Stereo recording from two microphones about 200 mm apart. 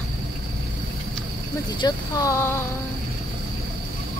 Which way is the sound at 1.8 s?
15° left (ahead or behind).